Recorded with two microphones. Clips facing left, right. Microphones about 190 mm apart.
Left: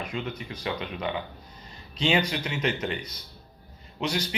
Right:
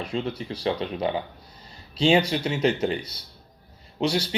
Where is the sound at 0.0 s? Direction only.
30° right (ahead or behind).